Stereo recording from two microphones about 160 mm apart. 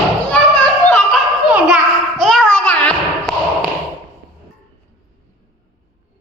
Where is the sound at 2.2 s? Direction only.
5° left (ahead or behind).